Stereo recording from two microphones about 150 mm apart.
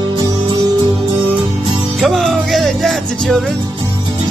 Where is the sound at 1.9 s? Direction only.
Centre (ahead or behind).